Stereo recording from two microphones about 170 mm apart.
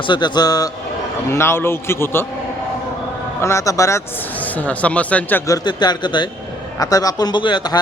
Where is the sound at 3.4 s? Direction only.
15° left (ahead or behind).